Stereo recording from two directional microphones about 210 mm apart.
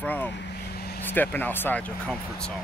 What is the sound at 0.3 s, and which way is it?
Vehicle, 50° left (ahead or behind).